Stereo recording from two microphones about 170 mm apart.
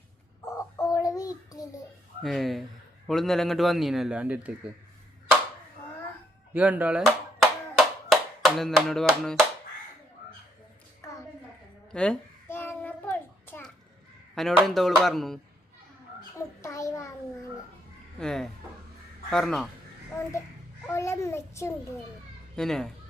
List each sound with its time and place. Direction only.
0.4 s a sound: 20° left (ahead or behind)
2.2 s speech: centre (ahead or behind)
6.5 s clapping: 10° right (ahead or behind)
11.0 s a sound: 15° left (ahead or behind)
11.9 s child singing: 5° left (ahead or behind)
14.3 s speech: centre (ahead or behind)
16.4 s a sound: 15° left (ahead or behind)
18.2 s speech: 5° left (ahead or behind)
20.8 s a child's voice: 15° left (ahead or behind)
22.5 s speech: 5° left (ahead or behind)